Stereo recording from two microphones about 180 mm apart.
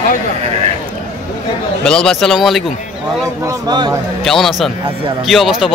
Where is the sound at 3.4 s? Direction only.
20° right (ahead or behind).